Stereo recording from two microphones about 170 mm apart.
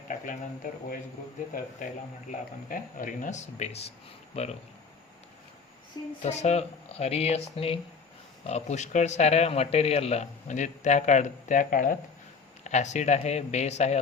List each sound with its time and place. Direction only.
0.1 s speech: 50° left (ahead or behind); by 4.5 s 35° left (ahead or behind)
6.2 s speech: 40° left (ahead or behind)